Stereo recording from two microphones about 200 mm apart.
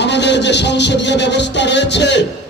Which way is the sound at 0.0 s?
60° left (ahead or behind).